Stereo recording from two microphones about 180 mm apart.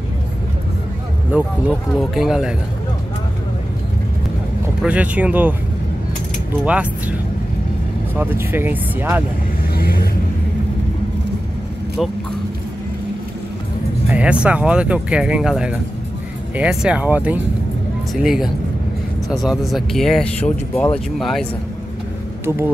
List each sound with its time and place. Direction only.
1.3 s speech: 5° right (ahead or behind)
4.8 s speech: 10° right (ahead or behind)
6.6 s speech: 10° right (ahead or behind)
8.2 s speech: 10° right (ahead or behind)
9.8 s vehicle: 55° left (ahead or behind)
14.0 s speech: 5° right (ahead or behind)
22.4 s speech: 15° right (ahead or behind)